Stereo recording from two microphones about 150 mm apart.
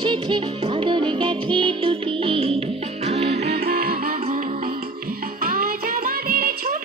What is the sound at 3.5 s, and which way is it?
Music, 90° right.